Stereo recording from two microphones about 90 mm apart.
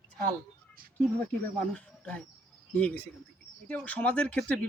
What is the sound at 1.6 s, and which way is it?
A man's voice, 15° left (ahead or behind).